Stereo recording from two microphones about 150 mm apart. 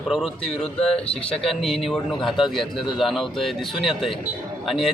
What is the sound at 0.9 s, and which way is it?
Speech, 40° left (ahead or behind).